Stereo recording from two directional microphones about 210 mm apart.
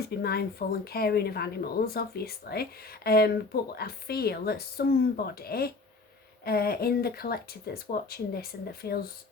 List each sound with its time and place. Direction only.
0.2 s speech: 50° left (ahead or behind)